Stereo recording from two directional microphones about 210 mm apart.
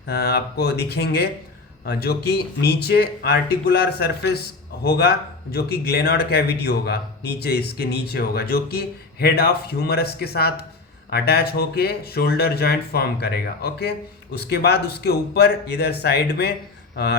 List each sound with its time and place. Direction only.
0.1 s speech: 50° left (ahead or behind)